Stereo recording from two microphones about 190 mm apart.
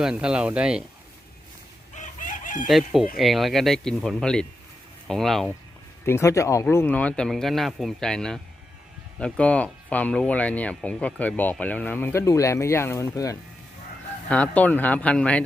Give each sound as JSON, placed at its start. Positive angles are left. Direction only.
{"t": 0.0, "sound": "speech", "side_deg": -5}
{"t": 1.9, "sound": "chicken", "side_deg": 40}
{"t": 2.6, "sound": "speech", "side_deg": 0}
{"t": 6.1, "sound": "speech", "side_deg": 15}